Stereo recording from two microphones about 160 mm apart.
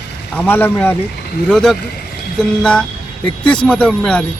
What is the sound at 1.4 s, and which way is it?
Speech, centre (ahead or behind).